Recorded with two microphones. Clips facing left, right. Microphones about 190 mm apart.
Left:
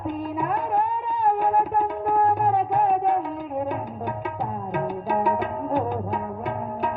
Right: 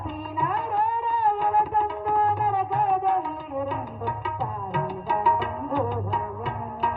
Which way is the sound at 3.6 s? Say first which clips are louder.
Even; 45° left (ahead or behind).